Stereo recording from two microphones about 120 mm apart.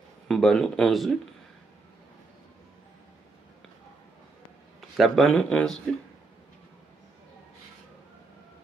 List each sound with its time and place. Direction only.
0.3 s speech: centre (ahead or behind)
4.9 s speech: centre (ahead or behind)